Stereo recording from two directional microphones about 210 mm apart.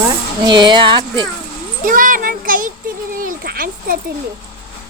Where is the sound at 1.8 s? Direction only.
40° right (ahead or behind).